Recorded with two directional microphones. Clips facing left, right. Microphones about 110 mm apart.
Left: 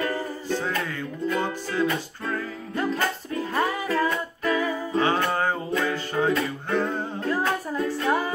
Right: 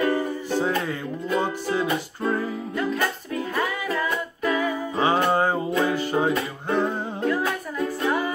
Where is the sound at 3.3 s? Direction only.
35° left (ahead or behind).